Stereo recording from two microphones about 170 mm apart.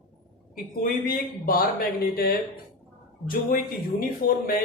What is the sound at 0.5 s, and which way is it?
A man's voice, 55° left (ahead or behind).